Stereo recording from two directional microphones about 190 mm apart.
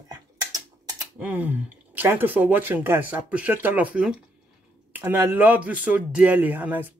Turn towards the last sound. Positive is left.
turn(degrees=-10)  # may be behind; listen again after turning